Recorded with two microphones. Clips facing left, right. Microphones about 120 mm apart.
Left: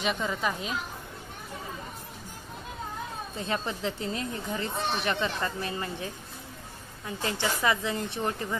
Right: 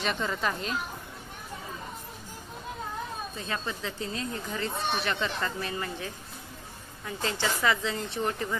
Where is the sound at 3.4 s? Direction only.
25° left (ahead or behind).